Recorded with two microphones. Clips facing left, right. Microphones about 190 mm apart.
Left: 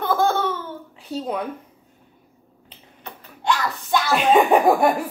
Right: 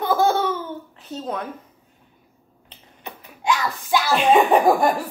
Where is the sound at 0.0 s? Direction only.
10° right (ahead or behind).